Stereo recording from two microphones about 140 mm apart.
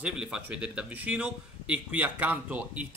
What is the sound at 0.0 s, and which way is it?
A man's voice, 5° right (ahead or behind).